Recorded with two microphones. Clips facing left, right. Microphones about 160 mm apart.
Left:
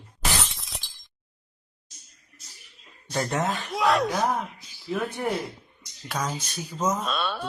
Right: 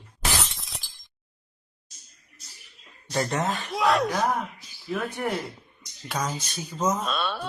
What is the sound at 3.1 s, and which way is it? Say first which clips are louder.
Speech: even; centre (ahead or behind).